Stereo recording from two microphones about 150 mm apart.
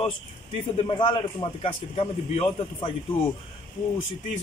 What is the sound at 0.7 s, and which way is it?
A man's voice, 35° left (ahead or behind).